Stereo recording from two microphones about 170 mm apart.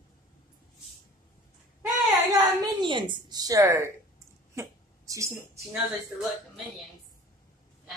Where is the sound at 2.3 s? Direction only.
25° right (ahead or behind).